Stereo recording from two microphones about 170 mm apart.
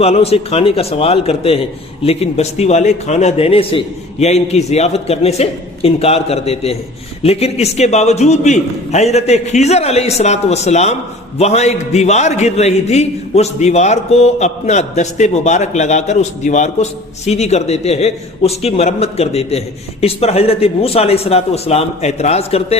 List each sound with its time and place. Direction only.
0.0 s a man's voice: 35° left (ahead or behind)